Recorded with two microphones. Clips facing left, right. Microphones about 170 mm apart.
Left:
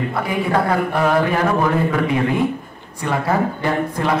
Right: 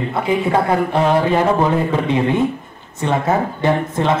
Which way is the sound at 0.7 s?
25° right (ahead or behind).